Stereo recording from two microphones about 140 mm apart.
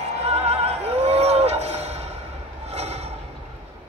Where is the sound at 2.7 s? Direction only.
50° right (ahead or behind).